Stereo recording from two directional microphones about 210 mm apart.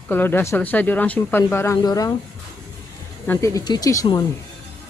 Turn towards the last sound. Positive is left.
turn(degrees=15)  # may be behind; listen again after turning